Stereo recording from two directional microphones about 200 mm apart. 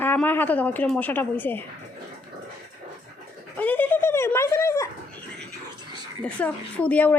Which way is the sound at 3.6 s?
10° left (ahead or behind).